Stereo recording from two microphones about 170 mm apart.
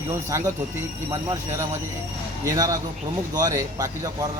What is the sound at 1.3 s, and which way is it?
Speech, 15° right (ahead or behind).